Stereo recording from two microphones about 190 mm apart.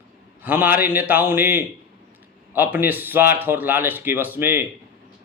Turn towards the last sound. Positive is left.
turn(degrees=-10)  # may be behind; listen again after turning